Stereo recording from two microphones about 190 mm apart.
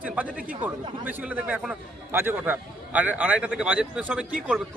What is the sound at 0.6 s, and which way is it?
A man's voice, 10° right (ahead or behind).